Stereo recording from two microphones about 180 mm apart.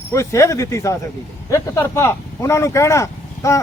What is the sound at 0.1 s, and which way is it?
Speech, 15° left (ahead or behind).